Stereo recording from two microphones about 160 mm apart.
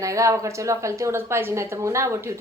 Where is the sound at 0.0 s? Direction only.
20° right (ahead or behind).